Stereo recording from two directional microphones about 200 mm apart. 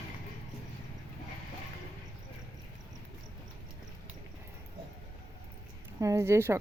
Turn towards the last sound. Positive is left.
turn(degrees=-10)  # may be behind; listen again after turning